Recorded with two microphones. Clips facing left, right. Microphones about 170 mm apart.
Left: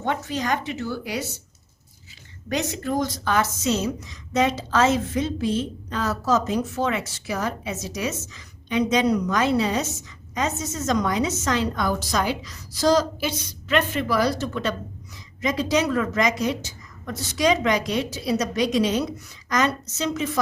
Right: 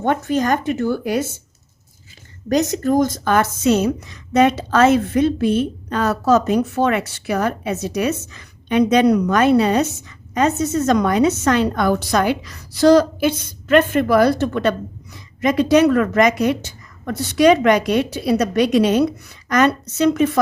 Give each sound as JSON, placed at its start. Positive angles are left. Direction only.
{"t": 0.0, "sound": "speech", "side_deg": -50}
{"t": 2.5, "sound": "a woman's voice", "side_deg": -40}